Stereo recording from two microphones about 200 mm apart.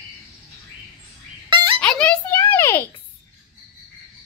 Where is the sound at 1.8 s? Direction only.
5° left (ahead or behind).